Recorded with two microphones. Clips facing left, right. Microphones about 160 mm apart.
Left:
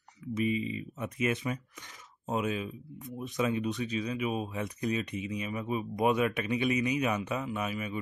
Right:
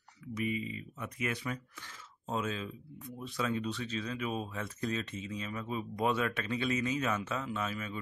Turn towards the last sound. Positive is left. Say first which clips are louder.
# left 3 dB
turn(degrees=15)  # may be behind; listen again after turning